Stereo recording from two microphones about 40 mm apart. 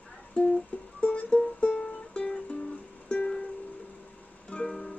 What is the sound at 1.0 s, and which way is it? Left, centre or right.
Music, left.